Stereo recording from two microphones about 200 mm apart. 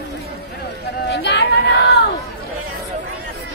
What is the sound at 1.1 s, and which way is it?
Chatter, 60° left (ahead or behind).